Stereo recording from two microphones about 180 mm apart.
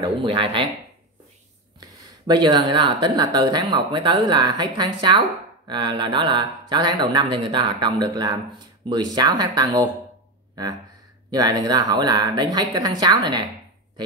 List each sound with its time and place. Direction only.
0.0 s speech: 30° right (ahead or behind)
1.8 s speech: 25° right (ahead or behind)
10.5 s a sound: 20° right (ahead or behind)
11.2 s speech: 20° right (ahead or behind)